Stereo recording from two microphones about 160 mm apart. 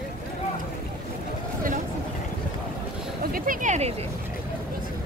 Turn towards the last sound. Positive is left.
turn(degrees=-50)  # may be behind; listen again after turning